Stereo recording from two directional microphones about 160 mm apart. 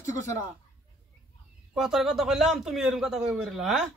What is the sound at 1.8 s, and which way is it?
A man's voice, centre (ahead or behind).